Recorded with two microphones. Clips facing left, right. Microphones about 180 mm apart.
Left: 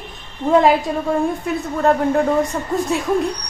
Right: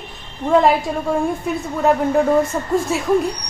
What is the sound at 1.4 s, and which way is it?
A woman's voice, centre (ahead or behind).